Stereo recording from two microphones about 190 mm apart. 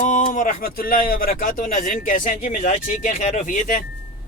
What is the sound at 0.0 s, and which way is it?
Speech, 40° left (ahead or behind).